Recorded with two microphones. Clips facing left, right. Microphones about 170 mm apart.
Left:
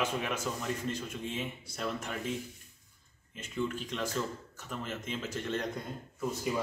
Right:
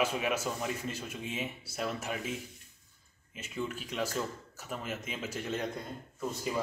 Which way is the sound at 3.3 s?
5° right (ahead or behind).